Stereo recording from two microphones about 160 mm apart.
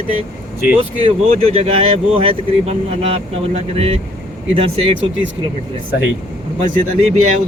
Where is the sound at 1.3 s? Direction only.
40° right (ahead or behind).